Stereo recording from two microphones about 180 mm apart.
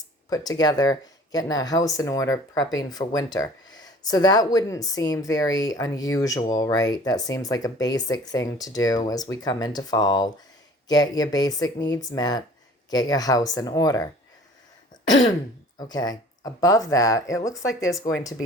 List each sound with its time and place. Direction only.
0.3 s speech: 20° left (ahead or behind)
15.9 s speech: 20° left (ahead or behind)